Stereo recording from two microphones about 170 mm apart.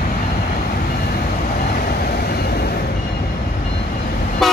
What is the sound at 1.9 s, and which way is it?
Vehicle, 65° left (ahead or behind).